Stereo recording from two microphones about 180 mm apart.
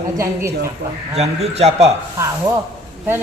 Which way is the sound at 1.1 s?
35° right (ahead or behind).